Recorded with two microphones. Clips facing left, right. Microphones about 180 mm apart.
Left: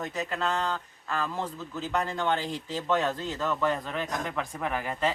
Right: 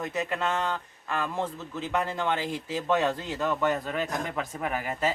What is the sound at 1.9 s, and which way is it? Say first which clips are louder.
Speech: even; 5° right (ahead or behind).